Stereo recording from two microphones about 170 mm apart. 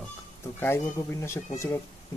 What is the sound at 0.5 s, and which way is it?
Speech, 15° left (ahead or behind).